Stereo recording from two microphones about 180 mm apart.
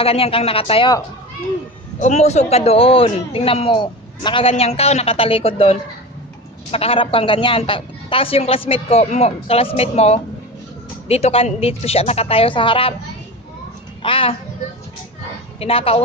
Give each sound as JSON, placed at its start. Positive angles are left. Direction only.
{"t": 0.0, "sound": "a woman's voice", "side_deg": 30}
{"t": 2.0, "sound": "a woman's voice", "side_deg": 40}
{"t": 14.0, "sound": "a child's voice", "side_deg": 30}
{"t": 15.6, "sound": "a woman's voice", "side_deg": 35}